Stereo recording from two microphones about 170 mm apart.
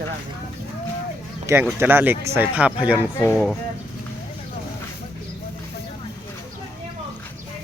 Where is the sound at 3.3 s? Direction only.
5° left (ahead or behind).